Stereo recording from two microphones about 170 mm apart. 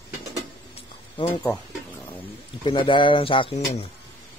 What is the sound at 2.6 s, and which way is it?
Speech, 25° left (ahead or behind).